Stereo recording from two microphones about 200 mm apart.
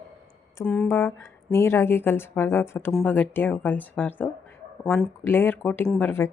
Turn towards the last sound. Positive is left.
turn(degrees=10)  # may be behind; listen again after turning